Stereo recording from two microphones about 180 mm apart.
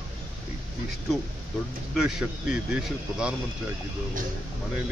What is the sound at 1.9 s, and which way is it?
Speech, 5° right (ahead or behind).